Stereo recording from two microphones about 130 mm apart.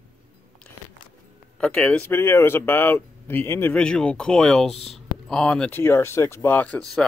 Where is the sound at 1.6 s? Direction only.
10° left (ahead or behind).